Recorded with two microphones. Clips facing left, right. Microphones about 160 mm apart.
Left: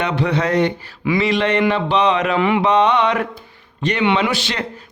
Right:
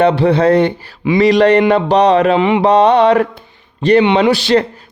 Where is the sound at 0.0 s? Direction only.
35° right (ahead or behind).